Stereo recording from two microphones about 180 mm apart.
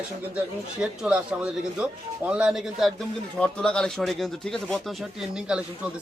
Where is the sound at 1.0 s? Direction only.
5° right (ahead or behind).